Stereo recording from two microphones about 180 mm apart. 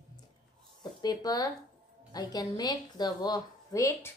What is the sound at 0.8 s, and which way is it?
A woman's voice, 25° left (ahead or behind).